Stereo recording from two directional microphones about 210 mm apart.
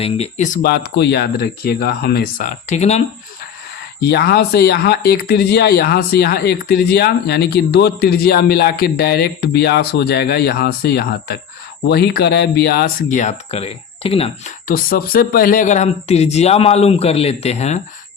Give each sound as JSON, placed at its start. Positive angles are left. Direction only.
{"t": 0.0, "sound": "speech", "side_deg": 30}
{"t": 4.0, "sound": "speech", "side_deg": 50}
{"t": 14.7, "sound": "speech", "side_deg": 45}